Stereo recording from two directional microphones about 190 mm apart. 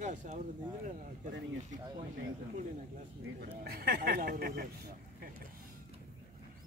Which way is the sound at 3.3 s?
50° right (ahead or behind).